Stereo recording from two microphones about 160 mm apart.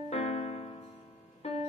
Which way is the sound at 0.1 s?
40° left (ahead or behind).